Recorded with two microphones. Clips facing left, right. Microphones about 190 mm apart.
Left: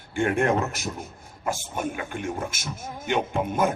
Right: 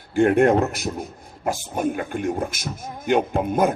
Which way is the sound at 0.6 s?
35° right (ahead or behind).